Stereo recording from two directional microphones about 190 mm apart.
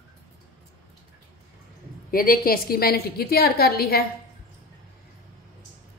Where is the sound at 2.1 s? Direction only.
50° left (ahead or behind).